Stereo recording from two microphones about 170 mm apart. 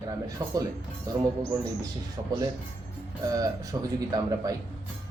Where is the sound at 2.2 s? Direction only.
30° right (ahead or behind).